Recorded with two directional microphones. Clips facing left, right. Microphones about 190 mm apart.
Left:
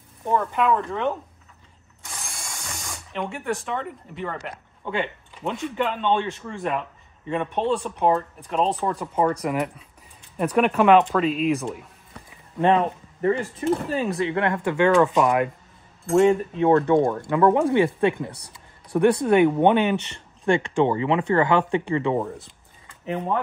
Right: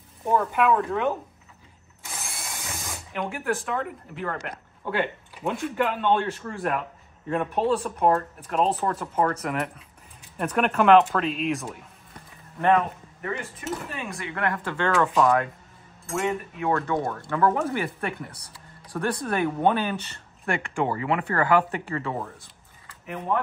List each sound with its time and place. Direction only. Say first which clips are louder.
0.2 s speech: even; 5° right (ahead or behind)
12.5 s speech: left 2 dB; 25° left (ahead or behind)
16.2 s speech: left 10 dB; 30° left (ahead or behind)